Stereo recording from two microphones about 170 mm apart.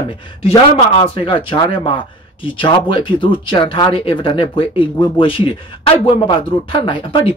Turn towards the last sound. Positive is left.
turn(degrees=30)  # may be behind; listen again after turning